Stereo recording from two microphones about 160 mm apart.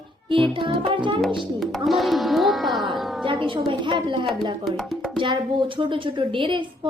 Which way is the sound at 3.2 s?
30° right (ahead or behind).